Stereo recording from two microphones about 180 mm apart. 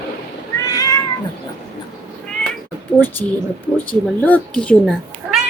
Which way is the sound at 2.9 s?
10° left (ahead or behind).